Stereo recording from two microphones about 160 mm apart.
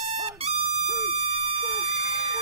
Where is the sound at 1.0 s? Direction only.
40° right (ahead or behind).